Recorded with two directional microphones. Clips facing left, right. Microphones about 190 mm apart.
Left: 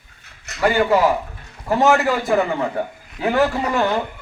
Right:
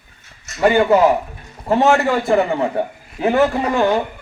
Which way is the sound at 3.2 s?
20° right (ahead or behind).